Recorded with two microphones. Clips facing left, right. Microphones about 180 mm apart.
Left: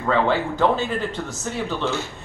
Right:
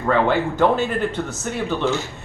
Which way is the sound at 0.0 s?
5° right (ahead or behind).